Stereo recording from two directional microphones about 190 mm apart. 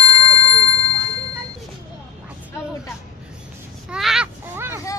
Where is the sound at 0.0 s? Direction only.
30° left (ahead or behind).